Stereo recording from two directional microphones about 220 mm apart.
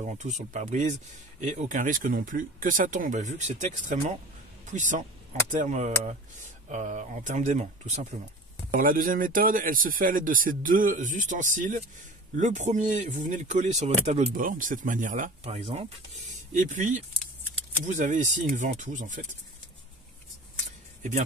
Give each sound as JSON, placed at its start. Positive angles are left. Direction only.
{"t": 0.0, "sound": "speech", "side_deg": -35}